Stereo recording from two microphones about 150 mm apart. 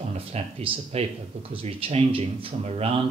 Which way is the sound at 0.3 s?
40° right (ahead or behind).